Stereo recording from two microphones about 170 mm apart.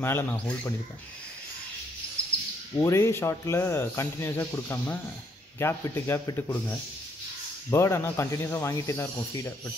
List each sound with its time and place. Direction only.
0.0 s speech: 10° left (ahead or behind)
2.8 s speech: 15° left (ahead or behind)